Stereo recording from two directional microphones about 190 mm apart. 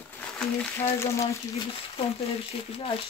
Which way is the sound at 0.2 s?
5° left (ahead or behind).